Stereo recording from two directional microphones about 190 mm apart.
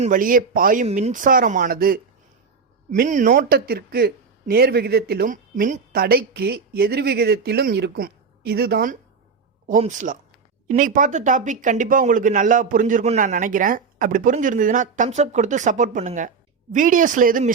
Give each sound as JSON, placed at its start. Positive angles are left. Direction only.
{"t": 0.0, "sound": "speech", "side_deg": -45}
{"t": 9.6, "sound": "speech", "side_deg": -40}